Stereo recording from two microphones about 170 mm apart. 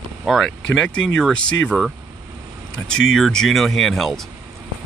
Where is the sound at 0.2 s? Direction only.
Centre (ahead or behind).